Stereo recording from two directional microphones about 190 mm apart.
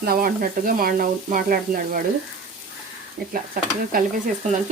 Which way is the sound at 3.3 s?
50° right (ahead or behind).